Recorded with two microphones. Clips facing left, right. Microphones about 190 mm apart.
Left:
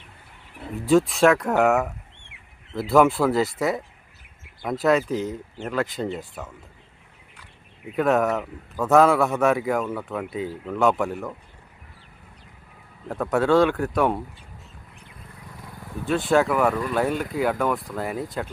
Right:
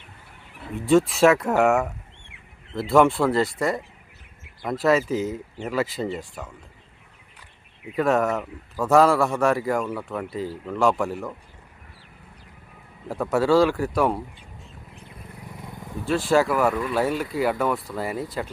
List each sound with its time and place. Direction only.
0.8 s a man's voice: centre (ahead or behind)
7.9 s a man's voice: centre (ahead or behind)
13.1 s a man's voice: centre (ahead or behind)
15.4 s vehicle: 20° right (ahead or behind)
16.0 s a man's voice: centre (ahead or behind)